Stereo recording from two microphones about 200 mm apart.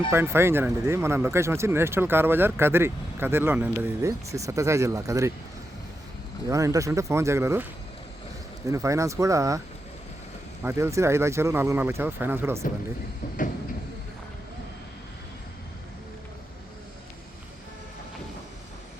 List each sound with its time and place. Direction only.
0.1 s speech: 10° right (ahead or behind)
6.5 s speech: 15° right (ahead or behind)
8.7 s speech: 15° right (ahead or behind)
10.6 s speech: 15° right (ahead or behind)